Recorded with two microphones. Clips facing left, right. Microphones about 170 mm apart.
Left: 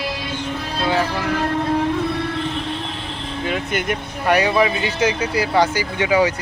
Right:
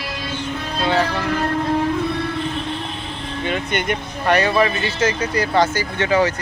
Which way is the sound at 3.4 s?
5° left (ahead or behind).